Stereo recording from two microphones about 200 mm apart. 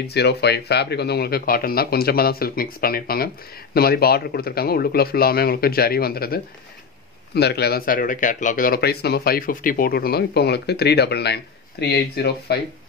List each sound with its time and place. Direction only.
0.0 s speech: 55° left (ahead or behind)